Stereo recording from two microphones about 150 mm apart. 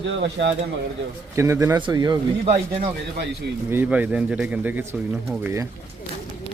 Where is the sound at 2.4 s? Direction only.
40° right (ahead or behind).